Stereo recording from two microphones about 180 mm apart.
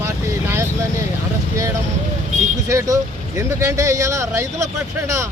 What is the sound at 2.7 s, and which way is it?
Speech, 20° right (ahead or behind).